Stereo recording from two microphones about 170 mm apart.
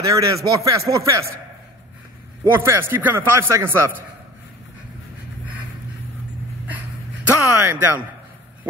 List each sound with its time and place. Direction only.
0.0 s speech: 20° right (ahead or behind)
2.4 s a man's voice: 15° right (ahead or behind)
7.2 s speech: 10° right (ahead or behind)